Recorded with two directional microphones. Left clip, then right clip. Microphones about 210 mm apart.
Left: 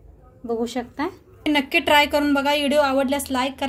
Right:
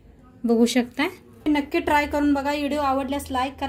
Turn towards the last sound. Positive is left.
turn(degrees=40)  # may be behind; listen again after turning